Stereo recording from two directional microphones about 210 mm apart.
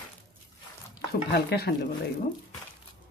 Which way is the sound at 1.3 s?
50° left (ahead or behind).